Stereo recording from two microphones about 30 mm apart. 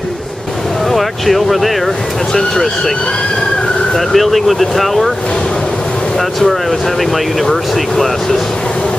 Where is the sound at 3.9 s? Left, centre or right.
Centre.